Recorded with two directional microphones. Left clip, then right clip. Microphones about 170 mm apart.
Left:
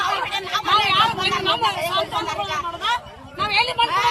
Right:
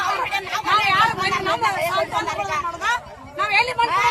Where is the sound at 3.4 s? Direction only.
5° left (ahead or behind).